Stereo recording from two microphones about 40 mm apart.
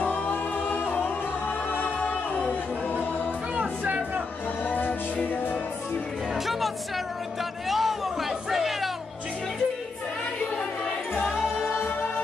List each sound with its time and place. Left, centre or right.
0.0 s singing: left
1.7 s music: left
3.5 s music: right
4.6 s music: left
6.3 s music: centre
7.6 s a sound: centre
8.3 s chatter: centre